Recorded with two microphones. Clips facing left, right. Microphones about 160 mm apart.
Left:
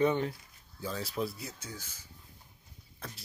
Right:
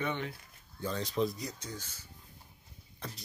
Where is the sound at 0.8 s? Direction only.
5° left (ahead or behind).